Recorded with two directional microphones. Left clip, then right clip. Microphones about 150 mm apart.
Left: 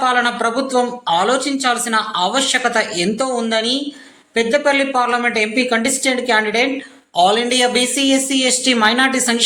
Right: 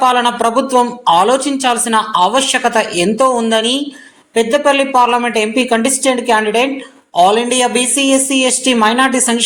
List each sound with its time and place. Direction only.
0.0 s a woman's voice: 20° right (ahead or behind)